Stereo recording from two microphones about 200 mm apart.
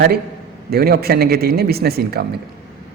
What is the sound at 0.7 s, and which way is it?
Speech, 50° right (ahead or behind).